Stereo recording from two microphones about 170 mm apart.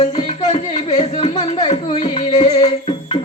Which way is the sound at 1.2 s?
40° left (ahead or behind).